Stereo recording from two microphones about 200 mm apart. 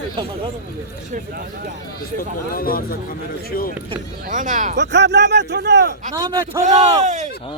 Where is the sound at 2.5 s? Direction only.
45° left (ahead or behind).